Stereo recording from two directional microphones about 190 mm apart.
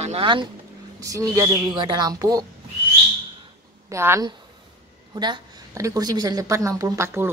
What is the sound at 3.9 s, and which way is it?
A woman's voice, 15° right (ahead or behind).